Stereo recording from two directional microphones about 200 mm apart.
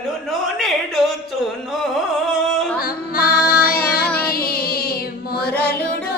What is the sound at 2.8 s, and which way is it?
Music, 50° left (ahead or behind).